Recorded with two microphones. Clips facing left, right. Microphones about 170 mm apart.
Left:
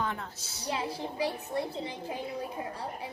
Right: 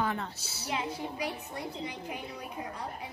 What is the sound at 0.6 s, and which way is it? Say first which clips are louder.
A woman's voice: left 1 dB; 35° left (ahead or behind).